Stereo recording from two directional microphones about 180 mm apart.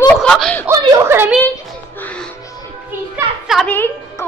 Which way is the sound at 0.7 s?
15° right (ahead or behind).